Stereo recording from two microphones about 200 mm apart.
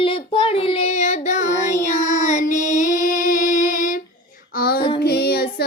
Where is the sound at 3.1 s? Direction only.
40° left (ahead or behind).